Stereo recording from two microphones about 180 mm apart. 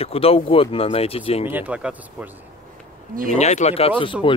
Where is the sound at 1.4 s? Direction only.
10° right (ahead or behind).